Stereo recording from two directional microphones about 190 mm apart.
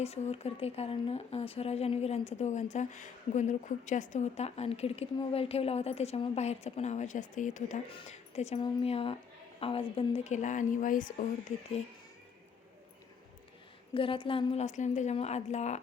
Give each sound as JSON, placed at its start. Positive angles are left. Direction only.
{"t": 0.0, "sound": "a woman's voice", "side_deg": 35}
{"t": 13.9, "sound": "a woman's voice", "side_deg": 25}